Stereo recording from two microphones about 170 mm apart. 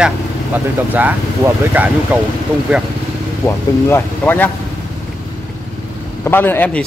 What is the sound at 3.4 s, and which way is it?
A man's voice, 15° left (ahead or behind).